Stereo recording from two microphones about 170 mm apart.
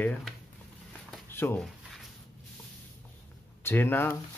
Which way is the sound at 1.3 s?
10° left (ahead or behind).